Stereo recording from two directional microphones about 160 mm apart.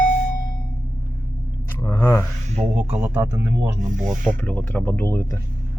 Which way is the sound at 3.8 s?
50° right (ahead or behind).